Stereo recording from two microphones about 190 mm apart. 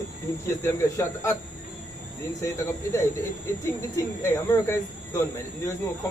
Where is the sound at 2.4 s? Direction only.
15° left (ahead or behind).